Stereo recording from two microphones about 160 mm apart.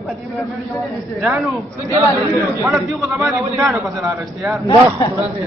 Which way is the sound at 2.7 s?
Centre (ahead or behind).